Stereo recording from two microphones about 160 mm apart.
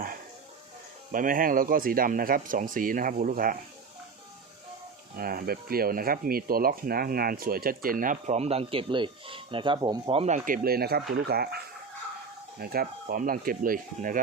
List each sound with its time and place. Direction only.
1.1 s speech: 60° right (ahead or behind)
5.1 s speech: 70° right (ahead or behind)